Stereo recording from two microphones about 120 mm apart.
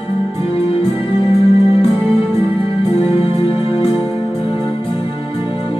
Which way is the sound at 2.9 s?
45° left (ahead or behind).